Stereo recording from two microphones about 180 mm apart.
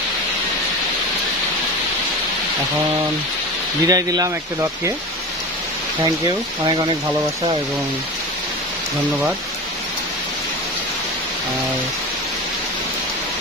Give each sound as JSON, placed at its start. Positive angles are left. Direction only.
{"t": 3.8, "sound": "speech", "side_deg": -20}
{"t": 6.0, "sound": "speech", "side_deg": -20}